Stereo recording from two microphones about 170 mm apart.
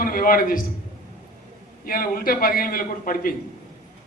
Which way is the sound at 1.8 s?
60° left (ahead or behind).